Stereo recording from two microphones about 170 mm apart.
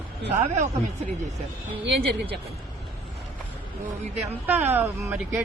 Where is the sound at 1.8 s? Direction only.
85° right.